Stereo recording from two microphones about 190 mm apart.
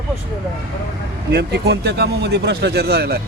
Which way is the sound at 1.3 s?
60° right (ahead or behind).